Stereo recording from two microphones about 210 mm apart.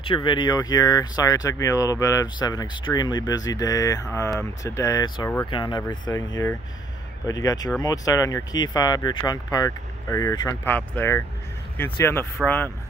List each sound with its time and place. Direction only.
0.0 s speech: 25° left (ahead or behind)